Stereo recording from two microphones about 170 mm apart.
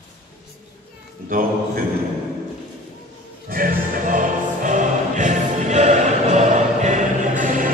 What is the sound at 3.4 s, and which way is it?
Music, 55° right (ahead or behind).